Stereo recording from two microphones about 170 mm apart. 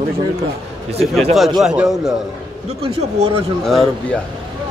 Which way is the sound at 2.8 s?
35° right (ahead or behind).